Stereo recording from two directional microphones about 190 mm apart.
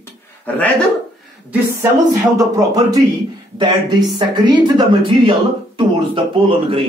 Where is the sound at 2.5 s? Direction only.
20° right (ahead or behind).